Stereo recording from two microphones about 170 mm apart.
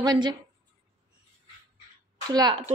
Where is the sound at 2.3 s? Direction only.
25° right (ahead or behind).